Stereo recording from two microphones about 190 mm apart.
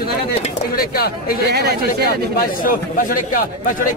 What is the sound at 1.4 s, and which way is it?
Speech, 60° right (ahead or behind).